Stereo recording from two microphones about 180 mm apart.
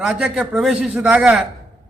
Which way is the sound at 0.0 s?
Centre (ahead or behind).